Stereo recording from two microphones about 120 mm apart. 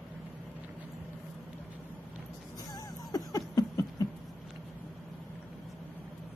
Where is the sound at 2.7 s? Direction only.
30° left (ahead or behind).